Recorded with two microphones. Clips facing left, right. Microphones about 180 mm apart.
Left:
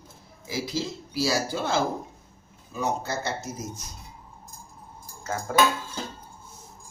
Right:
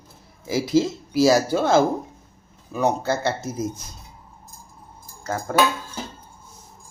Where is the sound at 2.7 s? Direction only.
60° right (ahead or behind).